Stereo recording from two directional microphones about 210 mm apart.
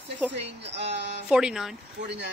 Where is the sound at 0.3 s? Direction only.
55° right (ahead or behind).